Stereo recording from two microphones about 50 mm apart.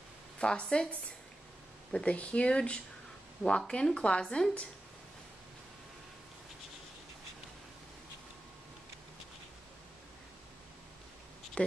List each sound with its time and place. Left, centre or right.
0.4 s speech: centre
1.9 s speech: centre
11.6 s speech: left